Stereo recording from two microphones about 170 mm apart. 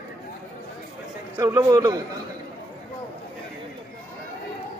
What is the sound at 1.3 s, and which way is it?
Speech, 20° right (ahead or behind).